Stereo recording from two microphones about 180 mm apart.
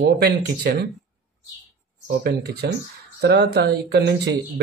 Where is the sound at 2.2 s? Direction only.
60° right (ahead or behind).